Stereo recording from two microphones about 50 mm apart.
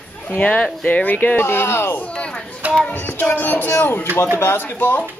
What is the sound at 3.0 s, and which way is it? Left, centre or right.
Speech, left.